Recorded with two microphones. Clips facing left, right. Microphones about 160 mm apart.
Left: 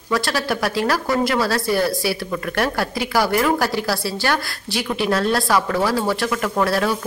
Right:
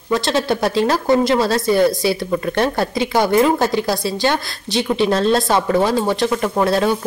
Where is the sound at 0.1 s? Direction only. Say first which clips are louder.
Right 4 dB; 20° right (ahead or behind).